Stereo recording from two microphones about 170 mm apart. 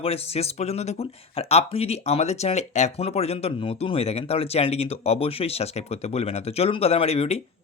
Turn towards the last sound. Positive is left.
turn(degrees=35)  # may be behind; listen again after turning